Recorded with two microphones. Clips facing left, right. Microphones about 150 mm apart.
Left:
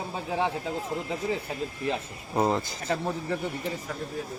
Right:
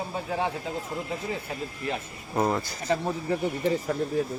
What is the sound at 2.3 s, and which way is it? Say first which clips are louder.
Speech: even; 20° left (ahead or behind).